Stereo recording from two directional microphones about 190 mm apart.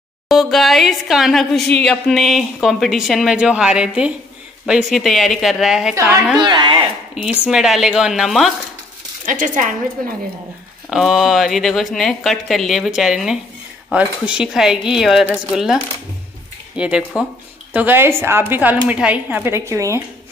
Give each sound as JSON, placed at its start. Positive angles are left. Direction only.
{"t": 0.3, "sound": "a woman's voice", "side_deg": 0}
{"t": 5.9, "sound": "a woman's voice", "side_deg": -25}
{"t": 7.2, "sound": "a woman's voice", "side_deg": -5}
{"t": 9.2, "sound": "speech", "side_deg": -40}
{"t": 10.9, "sound": "a woman's voice", "side_deg": 0}